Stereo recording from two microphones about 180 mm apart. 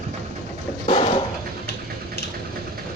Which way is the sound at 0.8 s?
30° left (ahead or behind).